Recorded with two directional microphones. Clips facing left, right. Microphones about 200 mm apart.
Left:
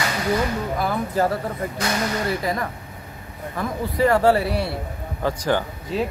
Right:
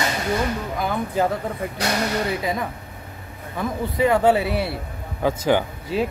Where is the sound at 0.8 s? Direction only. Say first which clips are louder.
Right 1 dB; centre (ahead or behind).